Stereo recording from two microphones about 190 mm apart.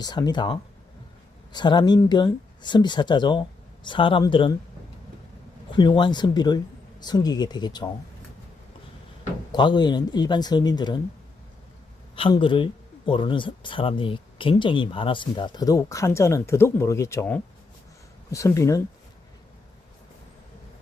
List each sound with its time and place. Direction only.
0.0 s speech: 20° left (ahead or behind)
5.7 s speech: 25° left (ahead or behind)
9.5 s speech: 25° left (ahead or behind)
12.1 s speech: 30° left (ahead or behind)